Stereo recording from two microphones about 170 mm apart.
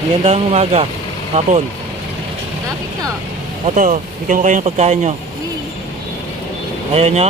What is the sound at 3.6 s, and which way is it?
Speech, 50° right (ahead or behind).